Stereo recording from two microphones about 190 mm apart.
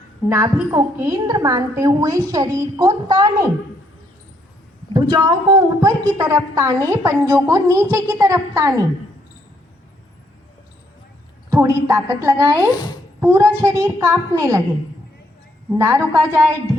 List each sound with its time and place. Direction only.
0.3 s a woman's voice: 15° right (ahead or behind)
4.9 s a woman's voice: 20° right (ahead or behind)
11.5 s a woman's voice: 15° right (ahead or behind)
15.7 s a woman's voice: 15° right (ahead or behind)